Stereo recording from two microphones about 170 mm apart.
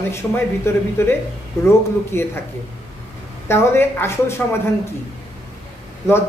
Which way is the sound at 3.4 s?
15° left (ahead or behind).